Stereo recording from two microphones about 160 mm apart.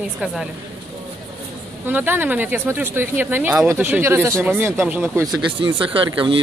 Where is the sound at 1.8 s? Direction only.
10° right (ahead or behind).